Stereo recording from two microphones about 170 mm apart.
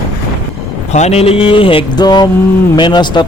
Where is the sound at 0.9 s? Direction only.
40° left (ahead or behind).